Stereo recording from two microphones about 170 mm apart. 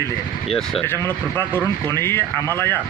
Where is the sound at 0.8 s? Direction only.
15° left (ahead or behind).